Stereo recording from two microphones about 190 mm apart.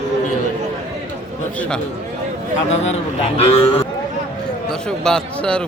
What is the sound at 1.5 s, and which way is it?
Speech, 5° left (ahead or behind).